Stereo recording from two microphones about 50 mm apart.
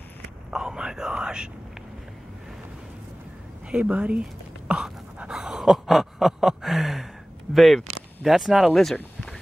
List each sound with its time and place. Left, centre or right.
0.5 s whispering: centre
3.7 s speech: right
4.6 s a sound: centre
7.5 s speech: centre